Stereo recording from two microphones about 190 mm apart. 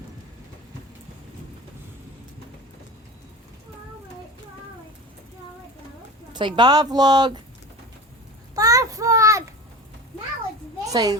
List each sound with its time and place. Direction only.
6.3 s a woman's voice: 25° right (ahead or behind)
8.5 s a sound: 20° right (ahead or behind)
10.8 s a child's voice: 20° right (ahead or behind)